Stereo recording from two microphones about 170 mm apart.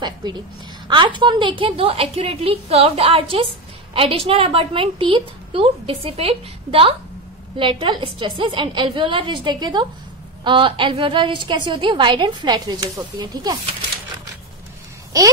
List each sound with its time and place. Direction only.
0.0 s a woman's voice: 25° right (ahead or behind)